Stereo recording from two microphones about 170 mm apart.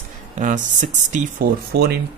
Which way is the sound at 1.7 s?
70° right (ahead or behind).